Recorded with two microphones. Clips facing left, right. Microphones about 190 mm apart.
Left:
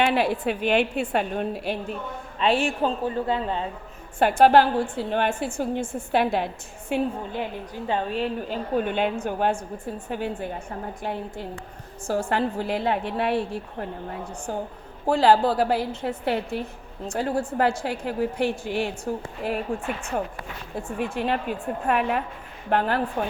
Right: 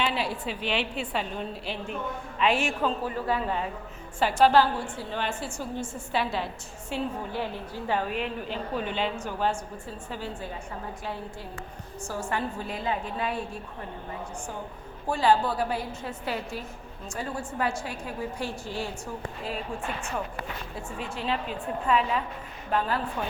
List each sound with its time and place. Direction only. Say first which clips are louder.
0.0 s a woman's voice: left 7 dB; 55° left (ahead or behind)
2.4 s a woman's voice: left 3 dB; 30° left (ahead or behind)
4.2 s a woman's voice: left 4 dB; 55° left (ahead or behind)
7.3 s a woman's voice: left 2 dB; 20° left (ahead or behind); by 13.8 s 70° left (ahead or behind)
15.1 s a woman's voice: left 5 dB; 85° left; by 18.9 s 65° left (ahead or behind)
20.7 s a woman's voice: left 10 dB; 55° left (ahead or behind)